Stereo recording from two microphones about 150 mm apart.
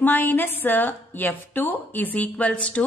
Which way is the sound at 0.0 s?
10° left (ahead or behind).